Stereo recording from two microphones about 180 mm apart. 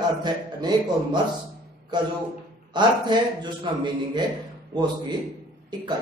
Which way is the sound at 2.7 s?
25° right (ahead or behind).